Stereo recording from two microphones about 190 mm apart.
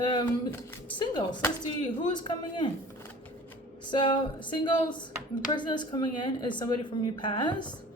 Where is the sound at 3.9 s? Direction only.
25° left (ahead or behind).